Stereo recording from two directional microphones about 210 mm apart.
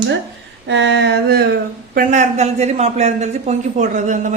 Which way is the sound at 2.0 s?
35° right (ahead or behind).